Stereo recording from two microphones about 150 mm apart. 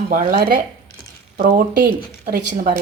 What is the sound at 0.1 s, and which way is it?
Speech, 65° right (ahead or behind).